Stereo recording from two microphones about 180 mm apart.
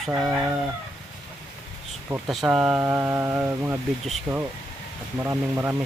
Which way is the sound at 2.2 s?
Centre (ahead or behind).